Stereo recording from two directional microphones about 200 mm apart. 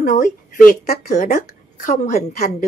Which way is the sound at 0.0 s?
40° left (ahead or behind).